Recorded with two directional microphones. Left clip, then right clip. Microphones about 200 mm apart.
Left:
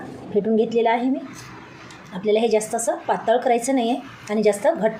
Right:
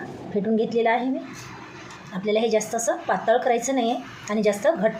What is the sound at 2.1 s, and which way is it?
A woman's voice, 15° left (ahead or behind).